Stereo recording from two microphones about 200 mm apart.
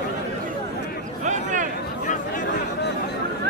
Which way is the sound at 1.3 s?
40° right (ahead or behind).